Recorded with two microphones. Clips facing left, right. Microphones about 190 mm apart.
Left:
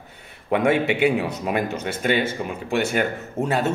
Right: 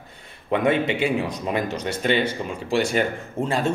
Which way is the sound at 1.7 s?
55° left (ahead or behind).